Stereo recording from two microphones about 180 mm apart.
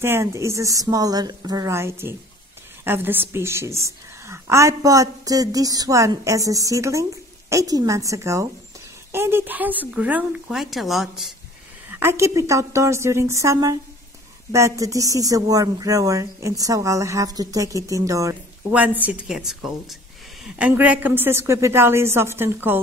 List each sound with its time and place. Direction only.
0.0 s a woman's voice: 15° right (ahead or behind)
11.9 s a woman's voice: 10° right (ahead or behind)
19.0 s a woman's voice: 5° right (ahead or behind)